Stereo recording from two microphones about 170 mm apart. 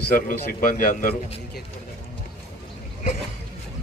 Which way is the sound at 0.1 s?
60° left (ahead or behind).